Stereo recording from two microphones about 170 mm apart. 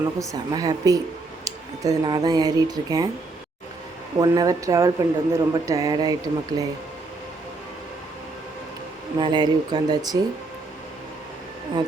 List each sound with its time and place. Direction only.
0.2 s speech: 20° right (ahead or behind)
4.2 s speech: 20° right (ahead or behind)
9.1 s speech: 25° right (ahead or behind)